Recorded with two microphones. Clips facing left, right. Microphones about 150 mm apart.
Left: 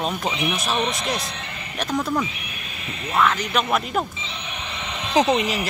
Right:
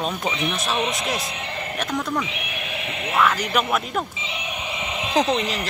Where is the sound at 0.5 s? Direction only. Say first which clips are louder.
Even; centre (ahead or behind).